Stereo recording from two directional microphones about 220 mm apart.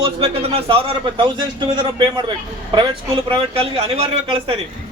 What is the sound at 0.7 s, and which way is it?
A man's voice, 20° right (ahead or behind).